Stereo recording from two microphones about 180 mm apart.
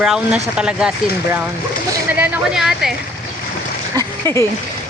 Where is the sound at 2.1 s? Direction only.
5° right (ahead or behind).